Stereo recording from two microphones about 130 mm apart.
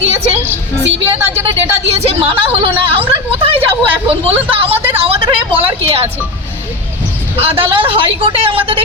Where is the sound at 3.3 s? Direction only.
50° right (ahead or behind).